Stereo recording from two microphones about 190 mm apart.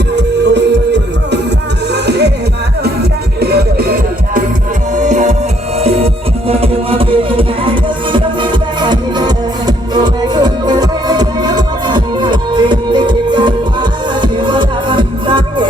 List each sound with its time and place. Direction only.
0.2 s music: 65° right (ahead or behind)
3.4 s music: 55° right (ahead or behind)
4.9 s music: 40° right (ahead or behind)